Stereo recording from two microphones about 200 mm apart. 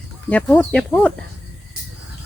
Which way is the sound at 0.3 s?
5° left (ahead or behind).